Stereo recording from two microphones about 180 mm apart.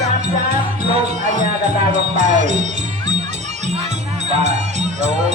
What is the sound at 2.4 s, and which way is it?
Music, 45° right (ahead or behind).